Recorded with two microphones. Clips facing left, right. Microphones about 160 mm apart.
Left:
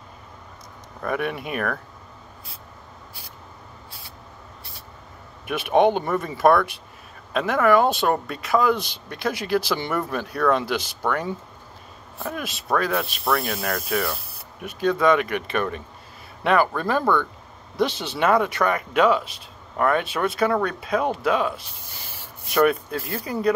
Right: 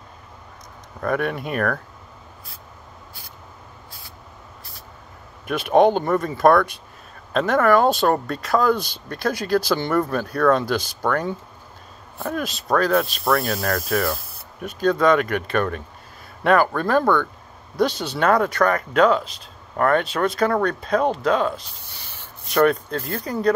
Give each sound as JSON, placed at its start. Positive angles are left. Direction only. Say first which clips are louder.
{"t": 1.0, "sound": "speech", "louder": "right 3 dB", "side_deg": 5}
{"t": 5.5, "sound": "speech", "louder": "right 2 dB", "side_deg": 5}
{"t": 13.8, "sound": "ratchet", "louder": "right 3 dB", "side_deg": 5}
{"t": 15.4, "sound": "speech", "louder": "right 3 dB", "side_deg": 5}
{"t": 22.1, "sound": "rub", "louder": "right 1 dB", "side_deg": 10}
{"t": 23.1, "sound": "speech", "louder": "right 2 dB", "side_deg": 5}